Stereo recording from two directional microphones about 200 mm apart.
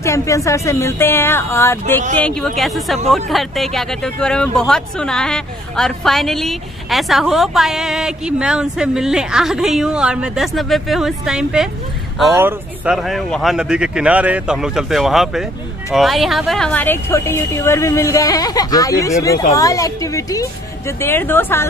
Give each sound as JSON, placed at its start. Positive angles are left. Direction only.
{"t": 0.0, "sound": "a woman's voice", "side_deg": 15}